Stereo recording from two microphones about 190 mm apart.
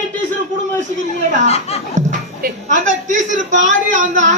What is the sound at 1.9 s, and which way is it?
Speech, 45° right (ahead or behind).